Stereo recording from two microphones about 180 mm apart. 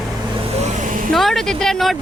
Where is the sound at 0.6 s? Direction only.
45° right (ahead or behind).